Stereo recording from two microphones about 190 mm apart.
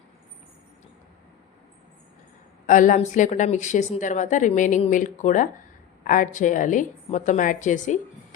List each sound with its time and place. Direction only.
2.6 s a woman's voice: 40° left (ahead or behind)